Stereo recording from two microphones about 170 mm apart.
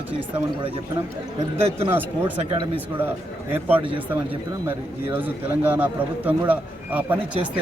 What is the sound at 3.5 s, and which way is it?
Speech, 10° right (ahead or behind).